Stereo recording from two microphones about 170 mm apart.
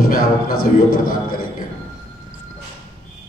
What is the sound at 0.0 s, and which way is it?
A man's voice, 60° left (ahead or behind).